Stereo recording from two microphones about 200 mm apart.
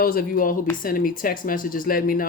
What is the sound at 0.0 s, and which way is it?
Speech, 45° left (ahead or behind).